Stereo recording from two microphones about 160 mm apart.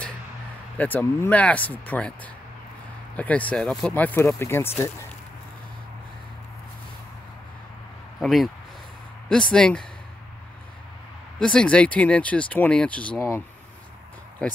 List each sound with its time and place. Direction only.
0.7 s speech: 10° left (ahead or behind)
8.2 s speech: centre (ahead or behind)
11.3 s speech: 5° left (ahead or behind)
14.4 s speech: 5° left (ahead or behind)